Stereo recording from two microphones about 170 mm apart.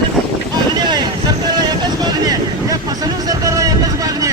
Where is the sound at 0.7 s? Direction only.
25° right (ahead or behind).